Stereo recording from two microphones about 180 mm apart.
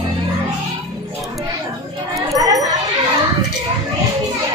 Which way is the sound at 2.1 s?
20° right (ahead or behind).